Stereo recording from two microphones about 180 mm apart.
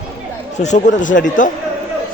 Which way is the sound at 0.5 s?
40° left (ahead or behind).